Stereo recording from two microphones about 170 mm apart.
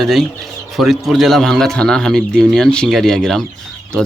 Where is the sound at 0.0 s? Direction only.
Centre (ahead or behind).